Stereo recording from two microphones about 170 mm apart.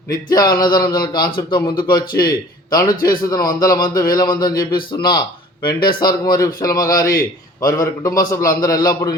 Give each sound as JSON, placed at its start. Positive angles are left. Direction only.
{"t": 0.3, "sound": "a man's voice", "side_deg": 25}